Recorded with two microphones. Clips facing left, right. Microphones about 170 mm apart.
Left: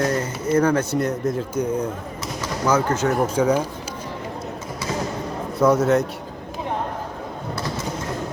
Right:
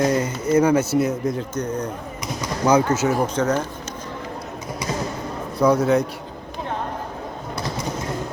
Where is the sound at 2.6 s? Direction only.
15° right (ahead or behind).